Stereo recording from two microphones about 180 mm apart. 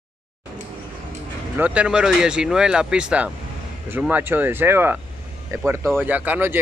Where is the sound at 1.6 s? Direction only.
5° right (ahead or behind).